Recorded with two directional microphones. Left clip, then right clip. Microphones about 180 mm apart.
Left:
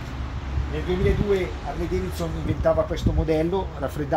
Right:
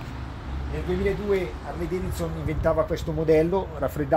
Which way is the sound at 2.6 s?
50° right (ahead or behind).